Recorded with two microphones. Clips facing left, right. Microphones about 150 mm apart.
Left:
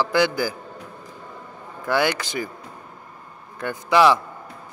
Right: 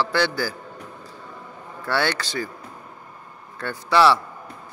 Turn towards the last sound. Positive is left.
turn(degrees=15)  # may be behind; listen again after turning